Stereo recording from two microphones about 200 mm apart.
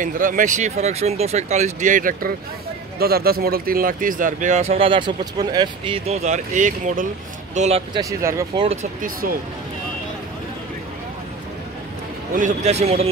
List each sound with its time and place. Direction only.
0.0 s speech: 40° right (ahead or behind)
7.9 s speech: 15° right (ahead or behind)
9.0 s speech: 45° right (ahead or behind)
12.4 s speech: 35° right (ahead or behind)